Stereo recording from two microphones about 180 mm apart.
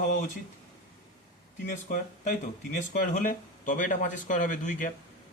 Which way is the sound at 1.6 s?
45° left (ahead or behind).